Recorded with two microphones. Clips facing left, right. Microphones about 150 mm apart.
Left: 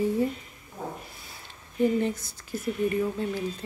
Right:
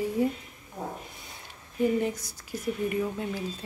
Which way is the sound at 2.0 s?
15° right (ahead or behind).